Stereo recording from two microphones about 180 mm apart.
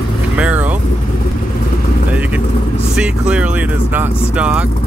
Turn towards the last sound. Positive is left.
turn(degrees=-5)  # may be behind; listen again after turning